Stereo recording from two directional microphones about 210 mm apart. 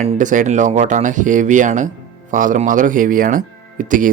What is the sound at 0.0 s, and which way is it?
Speech, 35° right (ahead or behind).